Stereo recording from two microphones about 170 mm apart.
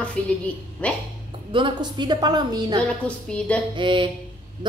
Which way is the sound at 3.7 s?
30° right (ahead or behind).